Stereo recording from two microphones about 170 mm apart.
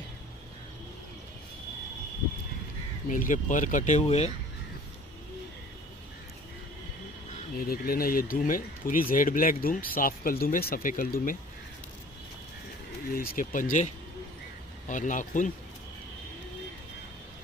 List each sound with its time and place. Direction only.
3.1 s speech: 50° left (ahead or behind)
7.5 s speech: 60° left (ahead or behind)
13.1 s speech: 60° left (ahead or behind)